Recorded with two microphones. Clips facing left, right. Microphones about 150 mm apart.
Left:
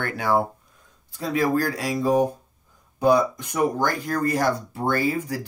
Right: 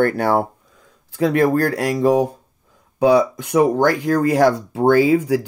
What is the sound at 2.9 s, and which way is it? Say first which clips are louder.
Speech: right 5 dB; 75° right (ahead or behind).